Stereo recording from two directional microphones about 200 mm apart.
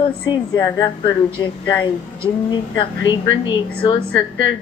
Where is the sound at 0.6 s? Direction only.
20° left (ahead or behind).